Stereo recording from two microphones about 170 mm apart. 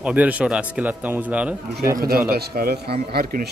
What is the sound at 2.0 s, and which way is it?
A man's voice, 60° right (ahead or behind).